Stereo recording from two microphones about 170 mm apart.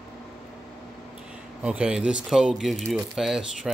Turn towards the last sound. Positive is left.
turn(degrees=-5)  # may be behind; listen again after turning